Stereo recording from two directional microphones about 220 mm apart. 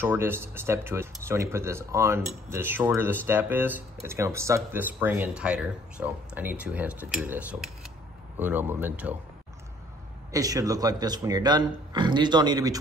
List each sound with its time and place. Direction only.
0.0 s speech: 10° right (ahead or behind)
10.3 s speech: 15° right (ahead or behind)